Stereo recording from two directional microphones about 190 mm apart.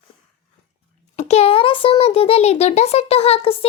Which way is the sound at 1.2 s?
30° left (ahead or behind).